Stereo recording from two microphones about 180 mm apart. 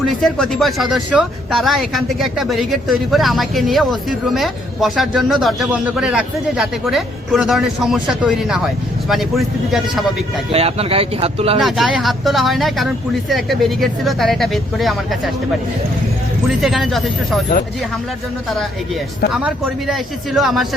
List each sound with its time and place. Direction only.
0.0 s a man's voice: centre (ahead or behind)
10.5 s speech: 35° right (ahead or behind)
11.6 s a man's voice: centre (ahead or behind)
16.6 s a man's voice: centre (ahead or behind)
19.3 s a man's voice: 5° right (ahead or behind)